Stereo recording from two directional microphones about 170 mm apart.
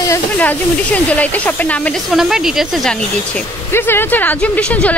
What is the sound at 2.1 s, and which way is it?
Speech, 5° right (ahead or behind).